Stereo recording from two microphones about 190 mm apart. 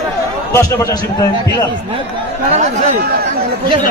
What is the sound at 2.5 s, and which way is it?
Speech, 40° right (ahead or behind).